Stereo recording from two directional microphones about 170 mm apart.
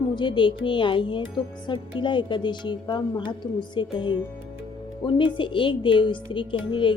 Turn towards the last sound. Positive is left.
turn(degrees=30)  # may be behind; listen again after turning